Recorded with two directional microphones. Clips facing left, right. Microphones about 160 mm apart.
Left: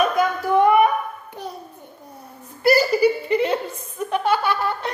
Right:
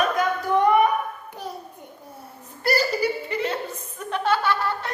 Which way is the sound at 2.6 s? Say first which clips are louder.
Left 6 dB; 10° left (ahead or behind).